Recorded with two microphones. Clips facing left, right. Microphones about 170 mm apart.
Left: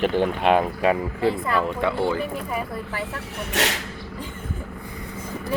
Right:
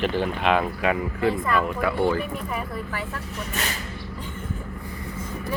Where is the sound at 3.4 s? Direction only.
80° left.